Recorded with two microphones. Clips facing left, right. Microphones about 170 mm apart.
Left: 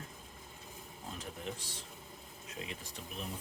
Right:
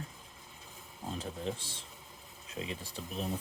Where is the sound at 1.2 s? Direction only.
30° right (ahead or behind).